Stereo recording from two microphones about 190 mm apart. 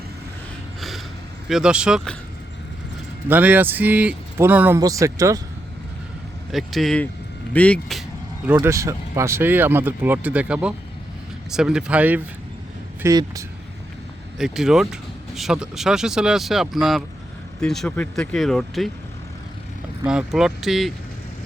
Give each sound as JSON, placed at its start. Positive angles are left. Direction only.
{"t": 0.8, "sound": "a sound", "side_deg": 0}
{"t": 1.5, "sound": "speech", "side_deg": -5}
{"t": 3.2, "sound": "speech", "side_deg": -10}
{"t": 6.5, "sound": "speech", "side_deg": 0}
{"t": 8.5, "sound": "speech", "side_deg": -15}
{"t": 14.3, "sound": "speech", "side_deg": 0}
{"t": 20.1, "sound": "speech", "side_deg": -5}